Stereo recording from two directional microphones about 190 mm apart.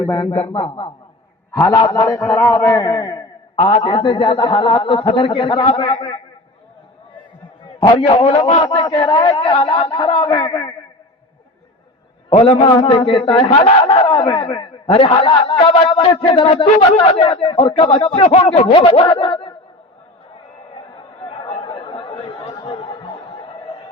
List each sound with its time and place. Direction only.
0.0 s a man's voice: 20° left (ahead or behind)
7.8 s a man's voice: 25° left (ahead or behind)
12.3 s a man's voice: 30° left (ahead or behind)
20.9 s chatter: 25° left (ahead or behind)